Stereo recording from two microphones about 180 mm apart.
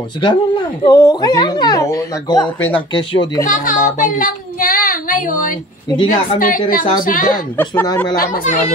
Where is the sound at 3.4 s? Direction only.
50° left (ahead or behind).